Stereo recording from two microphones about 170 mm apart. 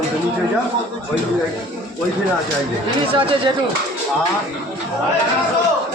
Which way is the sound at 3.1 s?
30° right (ahead or behind).